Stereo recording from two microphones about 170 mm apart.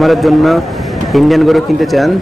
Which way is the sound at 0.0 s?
Centre (ahead or behind).